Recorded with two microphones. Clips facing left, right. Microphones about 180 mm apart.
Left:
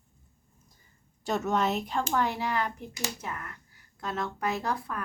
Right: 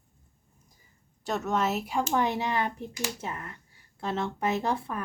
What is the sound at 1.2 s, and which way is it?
A woman's voice, centre (ahead or behind).